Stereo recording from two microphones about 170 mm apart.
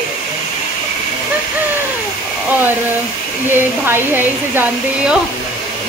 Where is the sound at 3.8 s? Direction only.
10° right (ahead or behind).